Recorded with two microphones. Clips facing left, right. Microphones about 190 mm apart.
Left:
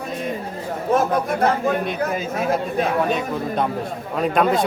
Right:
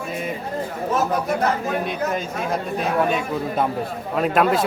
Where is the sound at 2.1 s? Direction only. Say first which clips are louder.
Left 2 dB; 5° left (ahead or behind).